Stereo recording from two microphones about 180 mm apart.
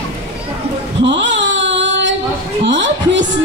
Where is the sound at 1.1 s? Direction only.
80° right.